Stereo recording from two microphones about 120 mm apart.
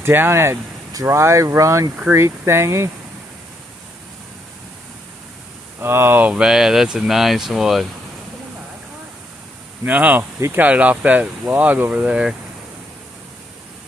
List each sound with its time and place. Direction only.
0.0 s speech: 20° right (ahead or behind)
5.8 s speech: 20° right (ahead or behind); by 7.8 s centre (ahead or behind)
9.8 s speech: 15° right (ahead or behind)